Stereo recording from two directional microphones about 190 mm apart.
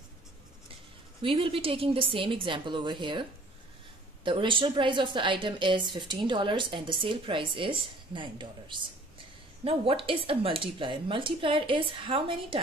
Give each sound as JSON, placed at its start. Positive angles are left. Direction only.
{"t": 1.2, "sound": "a woman's voice", "side_deg": -30}